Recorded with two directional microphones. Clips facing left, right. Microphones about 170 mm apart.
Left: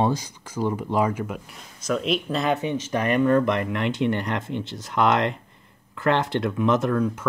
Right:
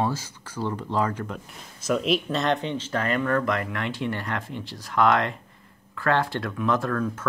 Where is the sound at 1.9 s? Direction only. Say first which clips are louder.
Even; centre (ahead or behind).